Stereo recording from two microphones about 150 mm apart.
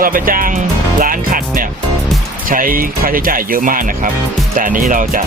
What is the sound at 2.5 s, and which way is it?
Speech, 70° right (ahead or behind).